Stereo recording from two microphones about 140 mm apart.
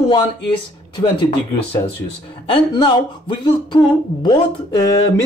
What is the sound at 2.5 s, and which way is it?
Speech, 35° left (ahead or behind).